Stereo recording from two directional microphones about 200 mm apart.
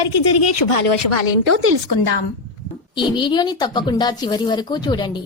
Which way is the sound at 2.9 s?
25° left (ahead or behind).